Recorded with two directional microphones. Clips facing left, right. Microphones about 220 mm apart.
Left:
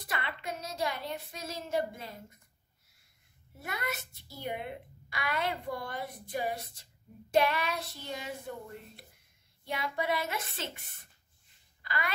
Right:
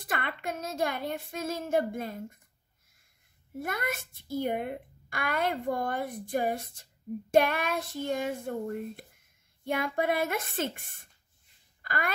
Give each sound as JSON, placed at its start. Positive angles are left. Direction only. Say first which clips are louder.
{"t": 0.0, "sound": "a child's voice", "louder": "right 4 dB", "side_deg": -50}
{"t": 3.5, "sound": "a child's voice", "louder": "right 5 dB", "side_deg": -50}
{"t": 11.8, "sound": "a sound", "louder": "right 3 dB", "side_deg": -50}